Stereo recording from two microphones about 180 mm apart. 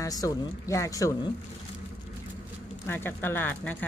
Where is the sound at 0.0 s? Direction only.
20° left (ahead or behind).